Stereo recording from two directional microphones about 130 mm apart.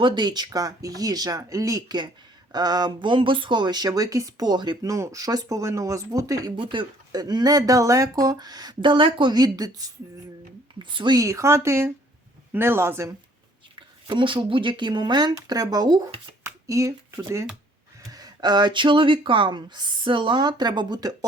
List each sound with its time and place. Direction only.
0.0 s speech: 35° right (ahead or behind)
13.7 s speech: 40° right (ahead or behind)
16.4 s a sound: 20° right (ahead or behind)
18.1 s speech: 30° right (ahead or behind)